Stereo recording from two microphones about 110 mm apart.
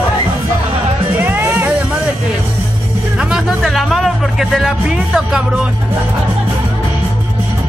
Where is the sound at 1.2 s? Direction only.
20° right (ahead or behind).